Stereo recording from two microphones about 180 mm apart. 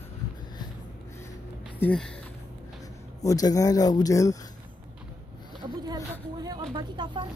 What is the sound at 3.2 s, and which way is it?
Speech, 20° left (ahead or behind).